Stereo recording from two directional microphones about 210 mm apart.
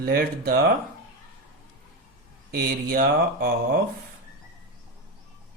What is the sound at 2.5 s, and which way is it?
Speech, 45° right (ahead or behind).